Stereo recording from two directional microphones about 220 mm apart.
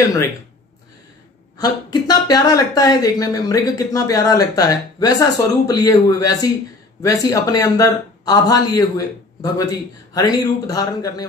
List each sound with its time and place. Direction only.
1.6 s speech: 15° left (ahead or behind)